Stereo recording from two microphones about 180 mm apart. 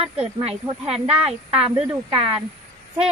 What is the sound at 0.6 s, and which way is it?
Speech, 15° right (ahead or behind).